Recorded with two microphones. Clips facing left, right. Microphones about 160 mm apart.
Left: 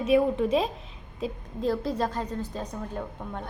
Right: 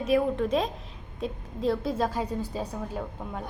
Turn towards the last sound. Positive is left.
turn(degrees=-5)  # may be behind; listen again after turning